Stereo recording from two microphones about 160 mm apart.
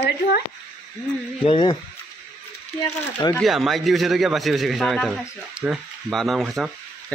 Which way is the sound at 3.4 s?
Centre (ahead or behind).